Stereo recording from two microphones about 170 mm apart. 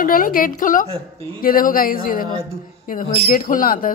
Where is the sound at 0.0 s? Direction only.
55° left (ahead or behind).